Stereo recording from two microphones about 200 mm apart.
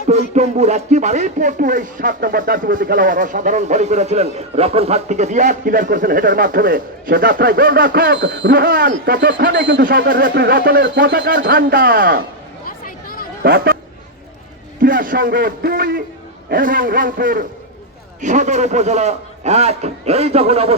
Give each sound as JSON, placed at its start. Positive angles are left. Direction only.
{"t": 0.1, "sound": "speech", "side_deg": -35}
{"t": 10.1, "sound": "speech", "side_deg": -45}
{"t": 11.3, "sound": "speech", "side_deg": -45}
{"t": 12.6, "sound": "chatter", "side_deg": 45}
{"t": 13.4, "sound": "speech", "side_deg": -50}
{"t": 14.8, "sound": "a man's voice", "side_deg": -45}